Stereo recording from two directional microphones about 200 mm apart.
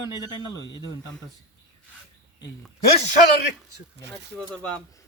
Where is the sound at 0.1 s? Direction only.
20° left (ahead or behind).